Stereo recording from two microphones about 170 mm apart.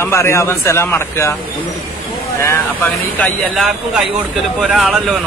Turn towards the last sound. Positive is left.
turn(degrees=0)  # may be behind; listen again after turning